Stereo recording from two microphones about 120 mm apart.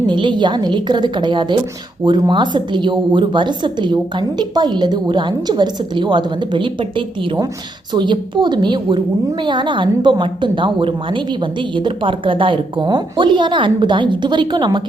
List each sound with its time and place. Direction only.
0.1 s a woman's voice: 40° right (ahead or behind)